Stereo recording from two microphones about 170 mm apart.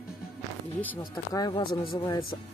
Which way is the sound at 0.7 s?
10° left (ahead or behind).